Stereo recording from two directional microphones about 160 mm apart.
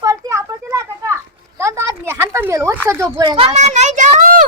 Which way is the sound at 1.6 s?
20° right (ahead or behind).